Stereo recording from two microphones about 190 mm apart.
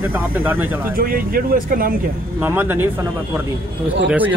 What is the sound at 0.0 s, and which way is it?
Speech, 10° right (ahead or behind).